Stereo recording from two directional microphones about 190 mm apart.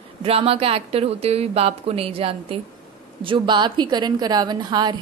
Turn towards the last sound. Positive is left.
turn(degrees=-20)  # may be behind; listen again after turning